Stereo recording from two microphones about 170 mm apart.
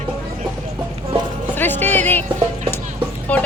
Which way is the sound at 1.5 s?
10° left (ahead or behind).